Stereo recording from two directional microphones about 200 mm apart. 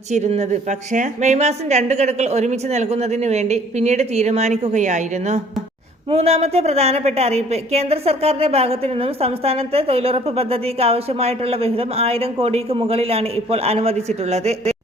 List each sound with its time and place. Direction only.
0.1 s a woman's voice: 35° right (ahead or behind)